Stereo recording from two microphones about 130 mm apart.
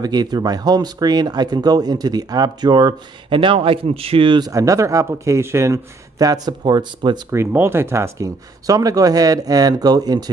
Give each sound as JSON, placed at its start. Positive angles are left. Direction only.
{"t": 0.0, "sound": "speech", "side_deg": -30}
{"t": 4.5, "sound": "speech", "side_deg": -25}
{"t": 7.2, "sound": "speech", "side_deg": -20}